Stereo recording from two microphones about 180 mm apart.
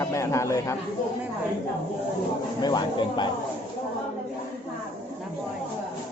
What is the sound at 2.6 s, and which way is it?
Speech, 25° left (ahead or behind).